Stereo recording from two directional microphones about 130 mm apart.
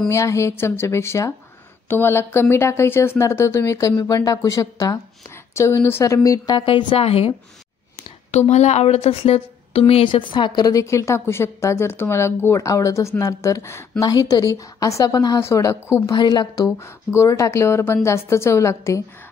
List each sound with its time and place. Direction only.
0.1 s a woman's voice: 20° left (ahead or behind)
6.6 s a woman's voice: 40° left (ahead or behind)
8.3 s a woman's voice: 60° left (ahead or behind); by 16.0 s 20° left (ahead or behind)
16.1 s a woman's voice: 35° left (ahead or behind)